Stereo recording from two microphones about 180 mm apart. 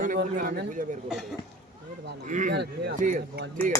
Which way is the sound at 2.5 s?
65° right (ahead or behind).